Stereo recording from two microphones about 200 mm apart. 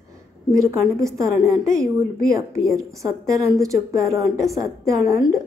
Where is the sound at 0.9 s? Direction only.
15° right (ahead or behind).